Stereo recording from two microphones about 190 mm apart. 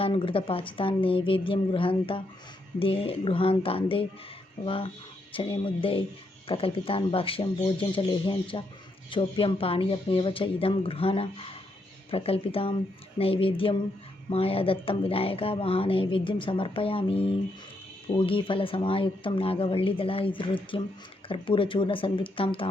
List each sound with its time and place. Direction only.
0.0 s speech: 25° left (ahead or behind)